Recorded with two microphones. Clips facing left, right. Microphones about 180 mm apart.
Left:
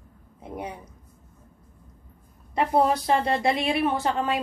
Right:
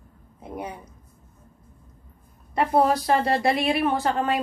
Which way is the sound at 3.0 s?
20° left (ahead or behind).